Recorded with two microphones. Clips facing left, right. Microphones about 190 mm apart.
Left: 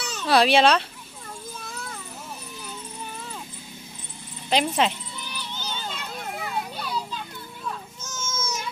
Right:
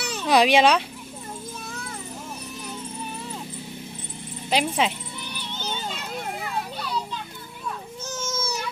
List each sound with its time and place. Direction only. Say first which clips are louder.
0.1 s speech: right 1 dB; 15° right (ahead or behind)
4.5 s speech: left 1 dB; 10° right (ahead or behind)
5.5 s children playing: right 4 dB; 25° right (ahead or behind)
8.0 s babbling: right 5 dB; 30° right (ahead or behind)